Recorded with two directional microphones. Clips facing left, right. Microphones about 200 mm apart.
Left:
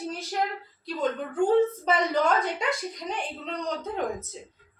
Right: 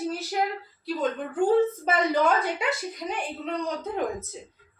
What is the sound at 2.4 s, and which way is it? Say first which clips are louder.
Speech: even; 5° right (ahead or behind).